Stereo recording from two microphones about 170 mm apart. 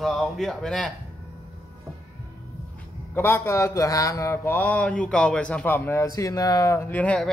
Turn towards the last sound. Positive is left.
turn(degrees=5)  # may be behind; listen again after turning